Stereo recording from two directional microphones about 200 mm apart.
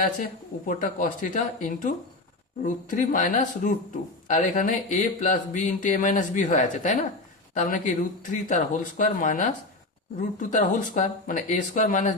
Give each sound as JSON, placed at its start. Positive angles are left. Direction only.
{"t": 0.2, "sound": "speech", "side_deg": 40}